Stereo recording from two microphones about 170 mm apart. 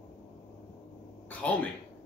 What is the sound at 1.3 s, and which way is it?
Speech, 10° left (ahead or behind).